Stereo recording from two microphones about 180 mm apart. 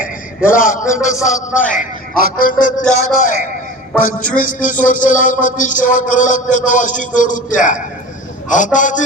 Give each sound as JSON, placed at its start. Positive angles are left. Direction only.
{"t": 0.4, "sound": "a man's voice", "side_deg": 50}